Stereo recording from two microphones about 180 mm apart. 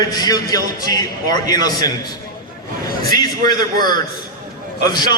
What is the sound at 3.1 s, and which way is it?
A man's voice, 20° left (ahead or behind).